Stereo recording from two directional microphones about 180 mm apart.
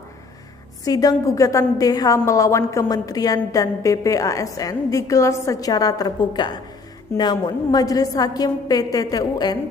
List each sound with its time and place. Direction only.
0.8 s a woman's voice: 20° left (ahead or behind)